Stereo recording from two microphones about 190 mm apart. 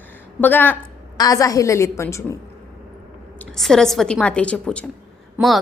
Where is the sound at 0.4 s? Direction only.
10° left (ahead or behind).